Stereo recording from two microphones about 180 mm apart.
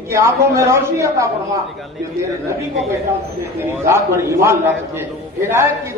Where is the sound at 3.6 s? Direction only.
15° right (ahead or behind).